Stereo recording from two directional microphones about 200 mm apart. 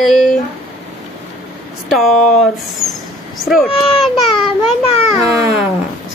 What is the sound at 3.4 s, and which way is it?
Speech, centre (ahead or behind).